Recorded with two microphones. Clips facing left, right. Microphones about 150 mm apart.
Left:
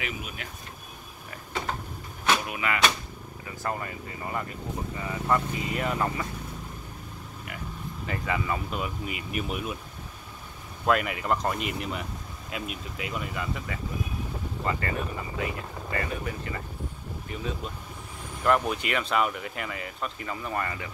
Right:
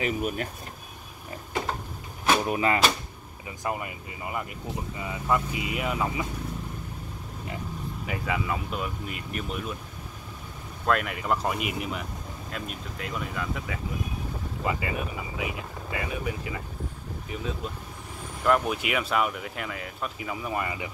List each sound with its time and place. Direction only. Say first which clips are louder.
0.0 s speech: right 8 dB; 45° right (ahead or behind)
2.3 s speech: right 7 dB; 35° right (ahead or behind)
3.4 s speech: right 1 dB; 10° right (ahead or behind)
8.1 s speech: even; centre (ahead or behind)
10.9 s speech: left 1 dB; centre (ahead or behind)